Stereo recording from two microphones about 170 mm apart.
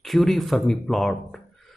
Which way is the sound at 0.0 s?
Centre (ahead or behind).